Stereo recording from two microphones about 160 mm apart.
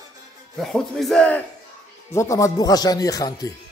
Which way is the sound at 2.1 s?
20° left (ahead or behind).